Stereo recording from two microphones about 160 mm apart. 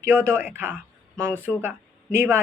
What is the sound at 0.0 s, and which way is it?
Speech, 15° right (ahead or behind).